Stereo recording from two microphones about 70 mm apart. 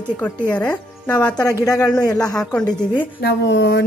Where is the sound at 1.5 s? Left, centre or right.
Left.